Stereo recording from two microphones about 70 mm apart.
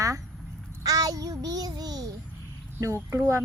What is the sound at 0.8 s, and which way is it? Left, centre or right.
A child's voice, right.